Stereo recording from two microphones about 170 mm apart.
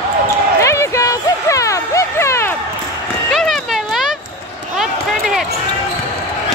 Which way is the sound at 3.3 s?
Centre (ahead or behind).